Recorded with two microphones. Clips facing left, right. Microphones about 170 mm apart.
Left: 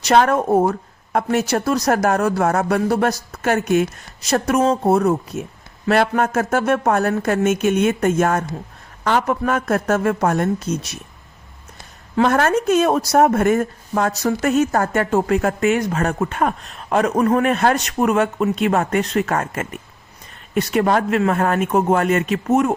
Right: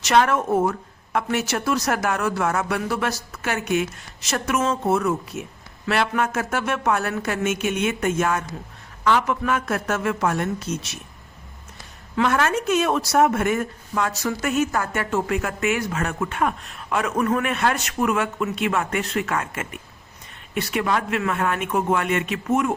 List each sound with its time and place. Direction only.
0.0 s speech: 35° left (ahead or behind)
12.1 s speech: 40° left (ahead or behind)